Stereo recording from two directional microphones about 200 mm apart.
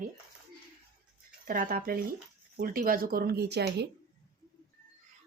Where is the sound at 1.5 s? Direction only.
45° right (ahead or behind).